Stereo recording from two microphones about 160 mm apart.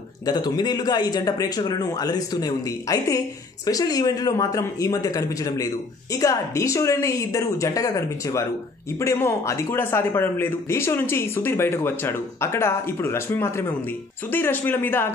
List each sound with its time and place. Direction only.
0.3 s speech: 25° left (ahead or behind)